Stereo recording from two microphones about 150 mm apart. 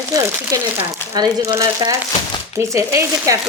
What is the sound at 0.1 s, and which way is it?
Speech, 20° right (ahead or behind).